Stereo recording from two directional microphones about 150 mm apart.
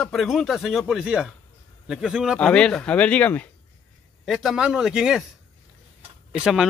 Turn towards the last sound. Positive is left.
turn(degrees=0)  # may be behind; listen again after turning